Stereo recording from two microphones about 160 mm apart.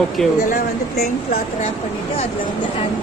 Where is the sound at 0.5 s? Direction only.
70° left (ahead or behind).